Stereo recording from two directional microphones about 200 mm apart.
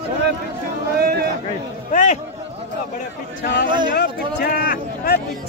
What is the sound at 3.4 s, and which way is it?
Speech, 40° left (ahead or behind).